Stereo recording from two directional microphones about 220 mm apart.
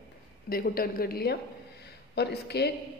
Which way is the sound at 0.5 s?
40° left (ahead or behind).